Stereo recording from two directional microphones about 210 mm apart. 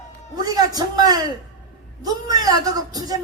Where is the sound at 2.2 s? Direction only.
20° right (ahead or behind).